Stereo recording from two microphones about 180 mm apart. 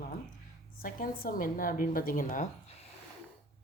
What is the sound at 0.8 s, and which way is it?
A woman's voice, 55° left (ahead or behind).